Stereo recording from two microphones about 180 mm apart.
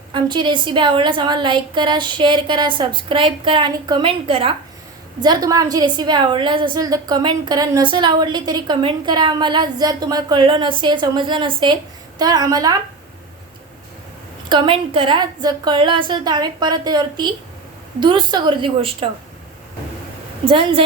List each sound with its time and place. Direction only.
0.1 s a woman's voice: 25° right (ahead or behind)
14.5 s a woman's voice: 25° right (ahead or behind)
20.4 s a woman's voice: 30° right (ahead or behind)